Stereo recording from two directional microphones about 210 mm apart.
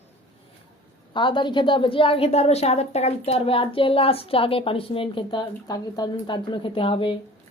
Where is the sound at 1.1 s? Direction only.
20° left (ahead or behind).